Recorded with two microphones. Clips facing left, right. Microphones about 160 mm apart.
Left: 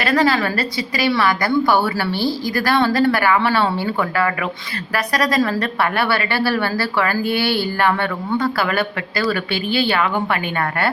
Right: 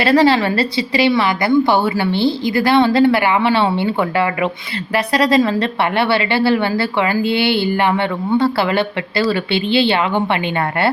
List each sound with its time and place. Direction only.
0.0 s a woman's voice: 30° right (ahead or behind)